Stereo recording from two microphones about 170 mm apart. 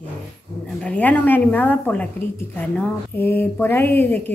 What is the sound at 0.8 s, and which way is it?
A woman's voice, 10° left (ahead or behind).